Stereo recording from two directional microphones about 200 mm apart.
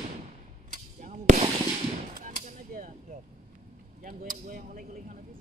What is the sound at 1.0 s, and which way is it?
Fireworks, 35° right (ahead or behind).